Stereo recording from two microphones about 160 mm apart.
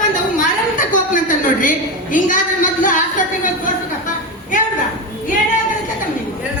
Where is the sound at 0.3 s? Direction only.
55° left (ahead or behind).